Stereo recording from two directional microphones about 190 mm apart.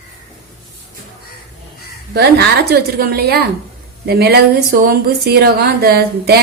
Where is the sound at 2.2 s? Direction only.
55° right (ahead or behind).